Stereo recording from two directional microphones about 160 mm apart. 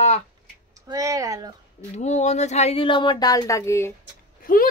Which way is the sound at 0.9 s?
20° right (ahead or behind).